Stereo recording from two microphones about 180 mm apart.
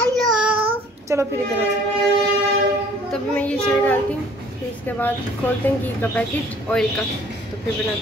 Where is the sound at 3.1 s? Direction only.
5° left (ahead or behind).